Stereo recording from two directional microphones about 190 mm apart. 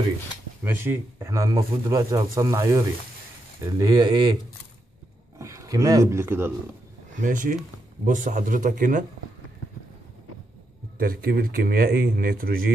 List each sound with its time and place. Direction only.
0.7 s speech: 10° right (ahead or behind)
5.4 s speech: 15° right (ahead or behind)
7.2 s speech: 45° right (ahead or behind)
11.0 s speech: 55° right (ahead or behind)